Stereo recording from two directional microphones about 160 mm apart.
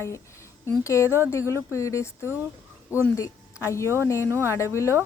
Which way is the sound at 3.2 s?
20° left (ahead or behind).